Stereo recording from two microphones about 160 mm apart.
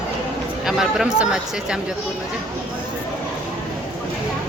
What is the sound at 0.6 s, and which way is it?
Speech, centre (ahead or behind).